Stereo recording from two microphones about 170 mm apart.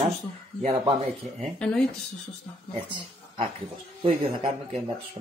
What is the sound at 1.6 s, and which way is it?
Speech, 5° left (ahead or behind).